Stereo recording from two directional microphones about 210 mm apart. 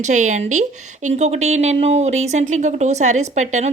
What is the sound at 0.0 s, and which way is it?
A woman's voice, 35° right (ahead or behind).